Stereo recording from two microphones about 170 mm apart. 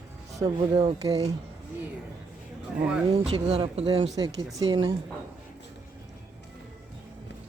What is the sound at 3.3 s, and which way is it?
Speech, 35° right (ahead or behind).